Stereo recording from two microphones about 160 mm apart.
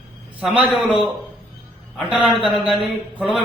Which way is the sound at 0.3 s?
5° right (ahead or behind).